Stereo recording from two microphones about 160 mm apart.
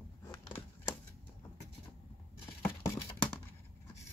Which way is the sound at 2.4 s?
15° left (ahead or behind).